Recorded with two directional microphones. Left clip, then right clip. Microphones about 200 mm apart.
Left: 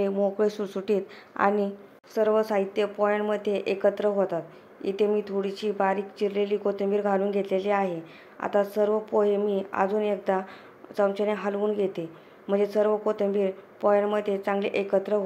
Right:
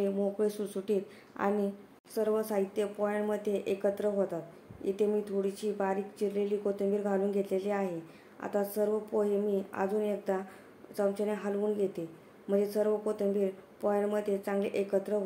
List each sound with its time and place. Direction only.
0.0 s speech: 15° left (ahead or behind)